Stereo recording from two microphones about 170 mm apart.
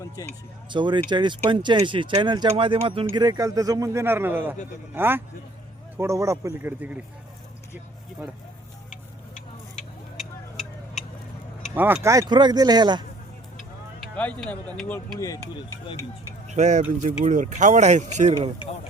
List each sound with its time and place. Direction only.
0.0 s speech: 20° left (ahead or behind)
0.7 s speech: 30° right (ahead or behind); by 7.0 s 10° right (ahead or behind)
11.7 s speech: 10° right (ahead or behind)
14.2 s speech: 10° left (ahead or behind); by 16.0 s 25° left (ahead or behind)
16.5 s speech: 45° right (ahead or behind)